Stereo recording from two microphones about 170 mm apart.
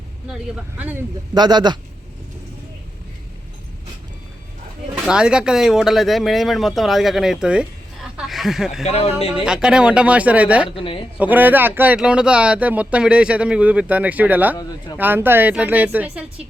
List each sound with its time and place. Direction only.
1.3 s a man's voice: 25° right (ahead or behind)
5.0 s speech: 5° right (ahead or behind)
8.1 s a sound: centre (ahead or behind)
8.8 s speech: 35° left (ahead or behind)
9.3 s speech: 5° right (ahead or behind)
10.8 s speech: 30° left (ahead or behind)
11.2 s speech: 10° right (ahead or behind)